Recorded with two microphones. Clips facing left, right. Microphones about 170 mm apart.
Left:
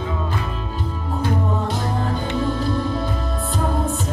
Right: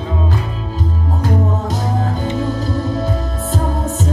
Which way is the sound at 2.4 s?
40° right (ahead or behind).